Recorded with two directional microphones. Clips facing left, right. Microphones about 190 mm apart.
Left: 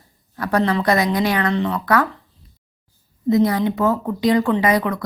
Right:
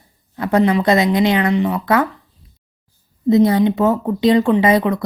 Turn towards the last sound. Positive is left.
turn(degrees=-25)  # may be behind; listen again after turning